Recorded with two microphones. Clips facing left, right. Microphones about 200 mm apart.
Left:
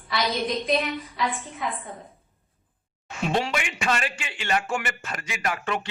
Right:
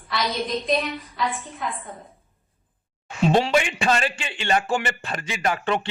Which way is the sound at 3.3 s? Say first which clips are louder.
Right 5 dB; 30° right (ahead or behind).